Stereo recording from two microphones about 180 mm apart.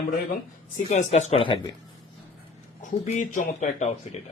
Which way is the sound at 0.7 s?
40° left (ahead or behind).